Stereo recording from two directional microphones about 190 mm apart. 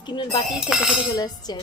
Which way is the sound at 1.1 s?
20° left (ahead or behind).